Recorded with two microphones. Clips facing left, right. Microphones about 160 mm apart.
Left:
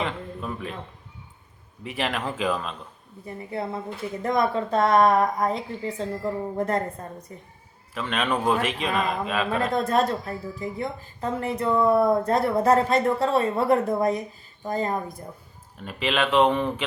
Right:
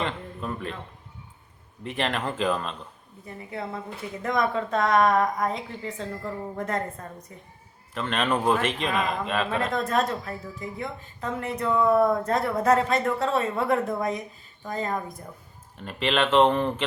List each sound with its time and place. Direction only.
0.0 s a sound: 5° left (ahead or behind)
1.8 s a man's voice: centre (ahead or behind)
3.2 s speech: 30° left (ahead or behind)
7.9 s a man's voice: centre (ahead or behind)
9.7 s speech: 30° left (ahead or behind)
15.8 s a man's voice: centre (ahead or behind)